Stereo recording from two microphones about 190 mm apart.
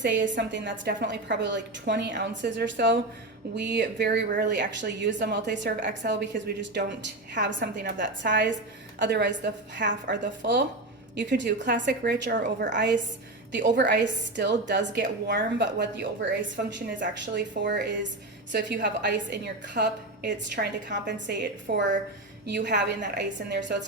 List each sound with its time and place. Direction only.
0.0 s a woman's voice: 70° right (ahead or behind)
12.3 s a woman's voice: 45° right (ahead or behind)
12.7 s a woman's voice: 65° right (ahead or behind)
18.5 s a woman's voice: 65° right (ahead or behind)